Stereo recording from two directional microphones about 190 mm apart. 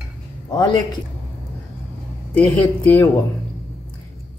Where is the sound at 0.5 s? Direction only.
20° left (ahead or behind).